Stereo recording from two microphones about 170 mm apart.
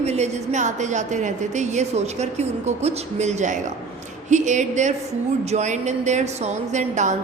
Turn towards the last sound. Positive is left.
turn(degrees=-45)  # may be behind; listen again after turning